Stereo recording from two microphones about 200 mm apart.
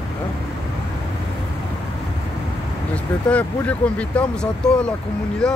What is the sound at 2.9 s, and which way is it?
Speech, 5° left (ahead or behind).